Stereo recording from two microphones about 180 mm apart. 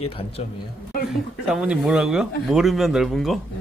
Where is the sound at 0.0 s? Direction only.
35° left (ahead or behind).